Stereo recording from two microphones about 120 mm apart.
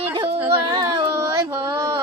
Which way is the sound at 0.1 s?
45° right (ahead or behind).